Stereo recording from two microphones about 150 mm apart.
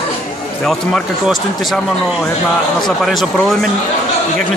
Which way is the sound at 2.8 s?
Centre (ahead or behind).